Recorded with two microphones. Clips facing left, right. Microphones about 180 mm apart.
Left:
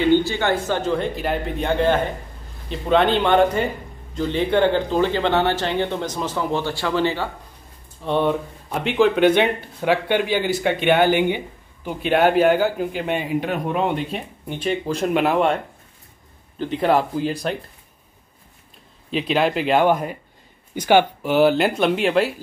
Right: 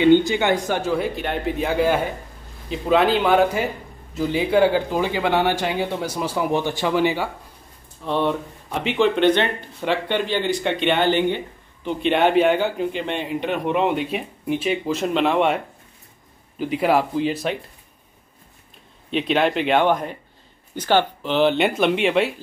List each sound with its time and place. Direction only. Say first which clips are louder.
0.0 s a man's voice: right 2 dB; 20° right (ahead or behind)
8.0 s a man's voice: left 2 dB; centre (ahead or behind)
19.0 s speech: even; centre (ahead or behind)